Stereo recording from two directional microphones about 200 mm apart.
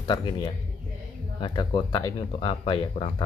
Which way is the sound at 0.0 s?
25° left (ahead or behind).